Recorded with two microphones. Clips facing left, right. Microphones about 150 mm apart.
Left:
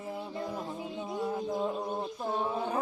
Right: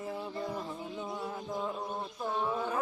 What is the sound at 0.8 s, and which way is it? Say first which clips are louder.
Music: left 3 dB; 25° left (ahead or behind).